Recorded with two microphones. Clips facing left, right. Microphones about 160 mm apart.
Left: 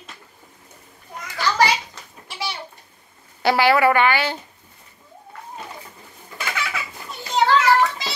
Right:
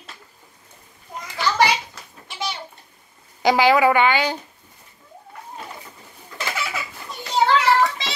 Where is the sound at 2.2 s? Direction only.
Centre (ahead or behind).